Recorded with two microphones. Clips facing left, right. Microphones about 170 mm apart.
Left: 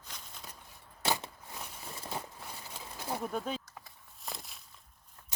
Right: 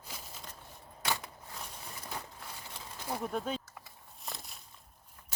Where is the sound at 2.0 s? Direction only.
25° left (ahead or behind).